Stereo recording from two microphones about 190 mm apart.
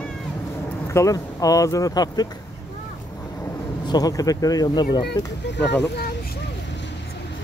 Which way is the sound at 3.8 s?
20° left (ahead or behind).